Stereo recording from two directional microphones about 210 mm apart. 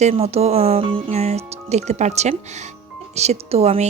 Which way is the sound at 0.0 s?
30° right (ahead or behind).